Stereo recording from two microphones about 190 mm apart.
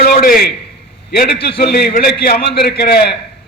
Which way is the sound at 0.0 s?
50° left (ahead or behind).